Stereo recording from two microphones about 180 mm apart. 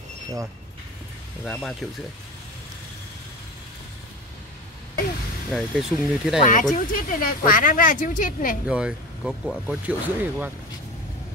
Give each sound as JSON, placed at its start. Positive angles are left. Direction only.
{"t": 1.4, "sound": "speech", "side_deg": 5}
{"t": 5.5, "sound": "speech", "side_deg": 0}
{"t": 6.4, "sound": "speech", "side_deg": 45}
{"t": 8.6, "sound": "speech", "side_deg": -5}